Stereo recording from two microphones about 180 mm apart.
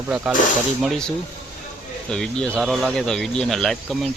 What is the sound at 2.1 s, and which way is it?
Speech, 5° left (ahead or behind).